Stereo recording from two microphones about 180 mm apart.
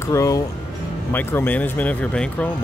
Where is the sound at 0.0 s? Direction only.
15° left (ahead or behind).